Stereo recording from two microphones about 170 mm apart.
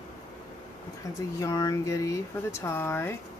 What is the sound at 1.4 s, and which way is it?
Speech, 20° left (ahead or behind).